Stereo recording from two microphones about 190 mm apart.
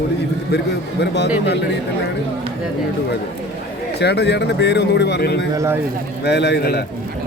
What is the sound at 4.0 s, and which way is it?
A man's voice, 60° left (ahead or behind).